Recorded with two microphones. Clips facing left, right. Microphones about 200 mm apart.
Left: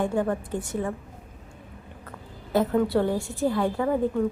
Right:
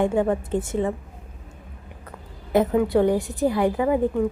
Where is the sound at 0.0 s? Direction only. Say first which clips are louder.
Right 4 dB; 20° right (ahead or behind).